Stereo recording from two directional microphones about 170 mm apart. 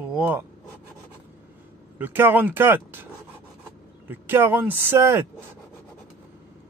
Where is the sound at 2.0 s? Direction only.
10° right (ahead or behind).